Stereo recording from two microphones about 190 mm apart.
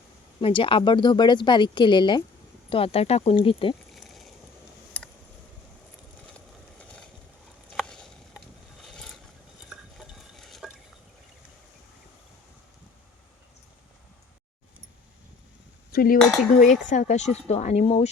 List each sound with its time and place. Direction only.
0.4 s speech: 30° left (ahead or behind)
3.9 s a sound: centre (ahead or behind)
6.7 s a sound: 5° left (ahead or behind)
8.8 s vehicle: centre (ahead or behind)
9.6 s stir: centre (ahead or behind)
15.9 s cutlery: 50° left (ahead or behind)
16.2 s cutlery: 5° left (ahead or behind)
16.8 s speech: 40° left (ahead or behind)